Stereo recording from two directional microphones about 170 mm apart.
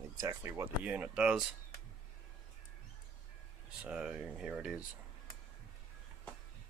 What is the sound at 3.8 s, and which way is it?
Speech, 5° right (ahead or behind).